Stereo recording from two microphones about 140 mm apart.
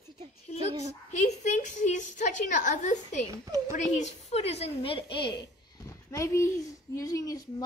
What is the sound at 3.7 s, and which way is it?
A woman's voice, 55° left (ahead or behind).